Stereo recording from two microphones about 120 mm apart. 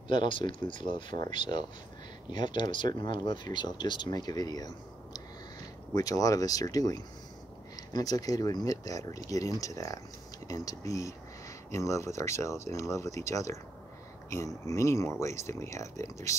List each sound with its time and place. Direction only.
0.1 s speech: 45° left (ahead or behind); by 16.3 s 25° left (ahead or behind)